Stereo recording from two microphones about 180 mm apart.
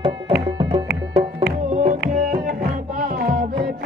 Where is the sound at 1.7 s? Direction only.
45° right (ahead or behind).